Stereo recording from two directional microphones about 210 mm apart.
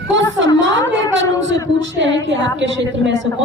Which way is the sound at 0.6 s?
60° right (ahead or behind).